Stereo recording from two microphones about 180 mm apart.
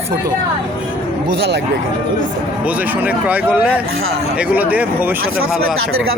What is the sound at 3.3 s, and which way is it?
Speech, 10° right (ahead or behind).